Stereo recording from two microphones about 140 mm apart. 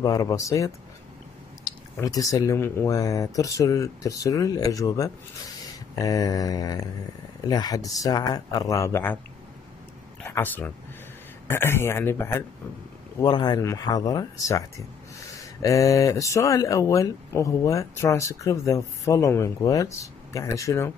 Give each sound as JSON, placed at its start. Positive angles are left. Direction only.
{"t": 0.0, "sound": "speech", "side_deg": 25}
{"t": 2.0, "sound": "speech", "side_deg": 25}
{"t": 10.2, "sound": "a man's voice", "side_deg": 15}
{"t": 13.2, "sound": "speech", "side_deg": 30}
{"t": 15.6, "sound": "speech", "side_deg": 25}